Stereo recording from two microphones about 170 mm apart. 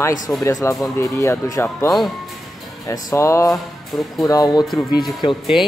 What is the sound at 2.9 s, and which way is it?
Speech, 20° left (ahead or behind).